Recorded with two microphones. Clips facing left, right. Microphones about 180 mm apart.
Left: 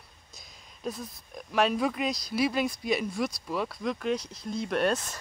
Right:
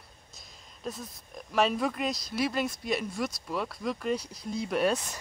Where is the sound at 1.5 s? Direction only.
Centre (ahead or behind).